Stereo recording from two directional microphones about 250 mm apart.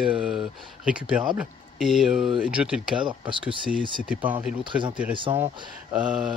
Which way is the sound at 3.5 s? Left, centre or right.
Centre.